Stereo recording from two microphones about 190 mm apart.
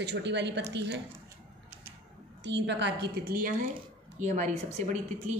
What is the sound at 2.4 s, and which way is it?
A woman's voice, 65° right (ahead or behind).